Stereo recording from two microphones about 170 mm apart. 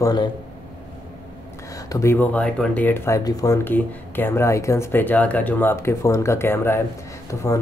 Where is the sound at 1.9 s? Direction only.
15° left (ahead or behind).